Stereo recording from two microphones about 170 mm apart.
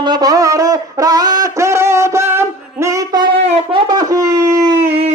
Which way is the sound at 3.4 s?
35° right (ahead or behind).